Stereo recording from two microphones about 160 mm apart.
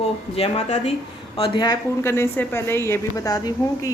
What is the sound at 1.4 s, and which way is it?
A woman's voice, 25° left (ahead or behind).